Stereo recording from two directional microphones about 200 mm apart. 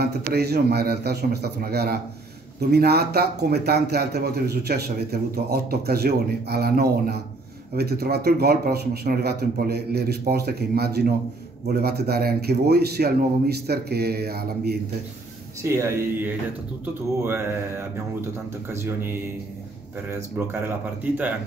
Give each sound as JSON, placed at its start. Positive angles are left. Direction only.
{"t": 0.0, "sound": "speech", "side_deg": -50}
{"t": 15.6, "sound": "speech", "side_deg": -15}